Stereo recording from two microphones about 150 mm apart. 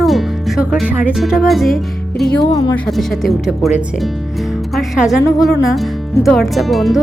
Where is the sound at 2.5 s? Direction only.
25° left (ahead or behind).